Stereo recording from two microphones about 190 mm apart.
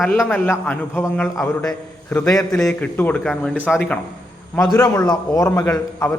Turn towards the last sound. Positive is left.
turn(degrees=15)  # may be behind; listen again after turning